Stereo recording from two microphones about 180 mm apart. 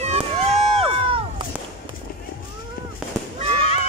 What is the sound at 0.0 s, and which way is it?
Crowd, 35° right (ahead or behind).